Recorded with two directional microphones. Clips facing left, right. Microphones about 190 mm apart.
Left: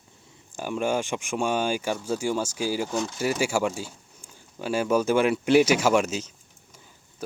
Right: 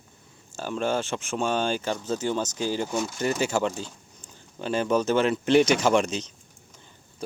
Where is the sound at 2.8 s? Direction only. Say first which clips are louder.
Even; 5° right (ahead or behind).